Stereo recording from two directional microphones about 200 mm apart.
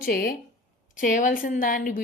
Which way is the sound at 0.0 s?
45° left (ahead or behind).